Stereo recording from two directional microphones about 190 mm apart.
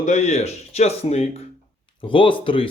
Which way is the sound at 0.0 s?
35° left (ahead or behind).